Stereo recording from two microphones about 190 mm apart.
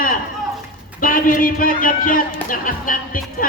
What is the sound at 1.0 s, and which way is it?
A man's voice, 45° left (ahead or behind).